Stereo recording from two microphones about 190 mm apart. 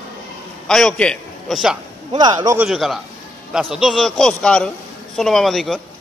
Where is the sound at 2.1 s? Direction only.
20° right (ahead or behind).